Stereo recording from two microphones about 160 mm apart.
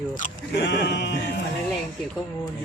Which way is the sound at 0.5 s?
90° left.